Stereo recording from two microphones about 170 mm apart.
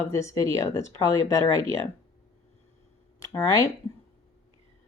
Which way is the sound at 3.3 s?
15° left (ahead or behind).